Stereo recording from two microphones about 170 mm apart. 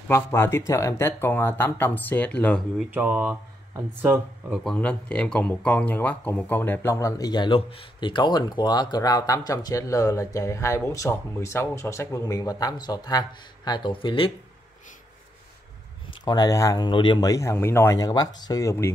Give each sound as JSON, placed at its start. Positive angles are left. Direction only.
{"t": 0.1, "sound": "speech", "side_deg": 15}
{"t": 2.9, "sound": "speech", "side_deg": -10}
{"t": 4.6, "sound": "speech", "side_deg": 5}
{"t": 16.3, "sound": "speech", "side_deg": 20}